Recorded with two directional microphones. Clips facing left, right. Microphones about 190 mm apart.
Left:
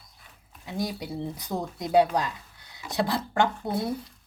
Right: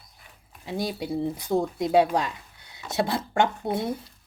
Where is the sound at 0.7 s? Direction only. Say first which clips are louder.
Right 3 dB; 25° right (ahead or behind).